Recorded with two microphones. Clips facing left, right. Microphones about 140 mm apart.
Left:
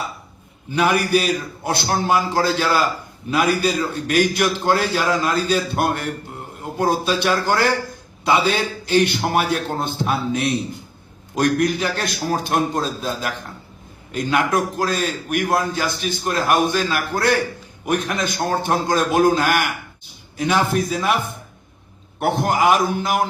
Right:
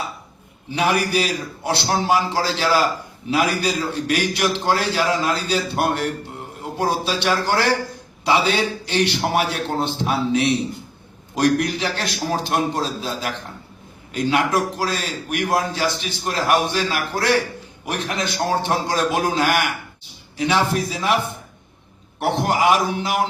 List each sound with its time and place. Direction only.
0.7 s a man's voice: 50° left (ahead or behind)
22.2 s a man's voice: 50° left (ahead or behind)